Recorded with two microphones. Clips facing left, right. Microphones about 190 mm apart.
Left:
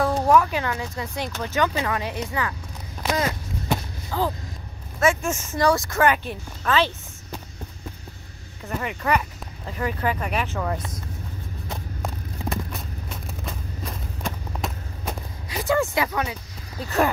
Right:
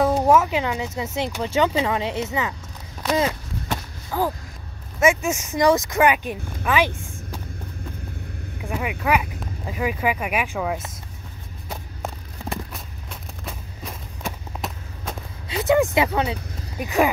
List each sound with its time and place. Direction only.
0.1 s speech: 20° right (ahead or behind)
4.1 s speech: 10° right (ahead or behind)
8.6 s speech: 10° right (ahead or behind)
11.7 s vehicle: 5° right (ahead or behind)
14.2 s a sound: centre (ahead or behind)
15.5 s speech: 20° right (ahead or behind)
16.7 s speech: 15° right (ahead or behind)